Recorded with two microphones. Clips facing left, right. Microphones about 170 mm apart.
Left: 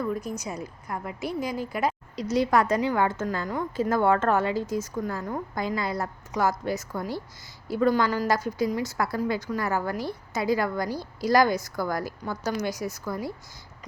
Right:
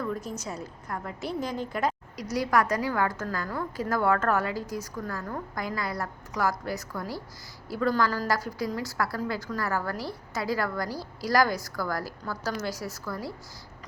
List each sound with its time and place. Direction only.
0.0 s a woman's voice: 10° left (ahead or behind)
2.1 s a woman's voice: 25° left (ahead or behind)